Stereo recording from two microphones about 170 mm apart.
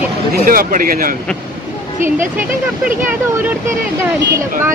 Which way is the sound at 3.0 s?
10° right (ahead or behind).